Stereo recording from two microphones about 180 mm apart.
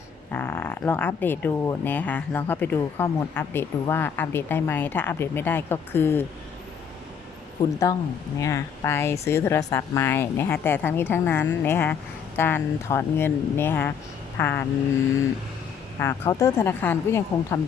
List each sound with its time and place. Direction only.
0.3 s speech: 10° left (ahead or behind)
7.6 s speech: 20° left (ahead or behind)
16.0 s speech: 15° left (ahead or behind)